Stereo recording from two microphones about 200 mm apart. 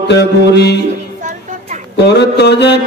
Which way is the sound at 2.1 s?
55° left (ahead or behind).